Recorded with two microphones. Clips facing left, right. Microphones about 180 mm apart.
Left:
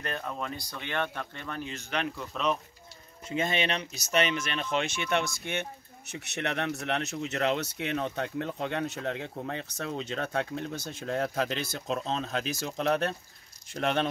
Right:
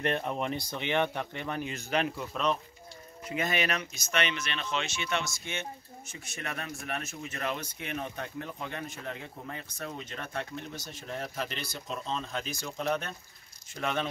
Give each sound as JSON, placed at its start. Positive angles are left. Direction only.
{"t": 0.0, "sound": "speech", "side_deg": -25}
{"t": 3.3, "sound": "speech", "side_deg": 25}
{"t": 12.6, "sound": "speech", "side_deg": 70}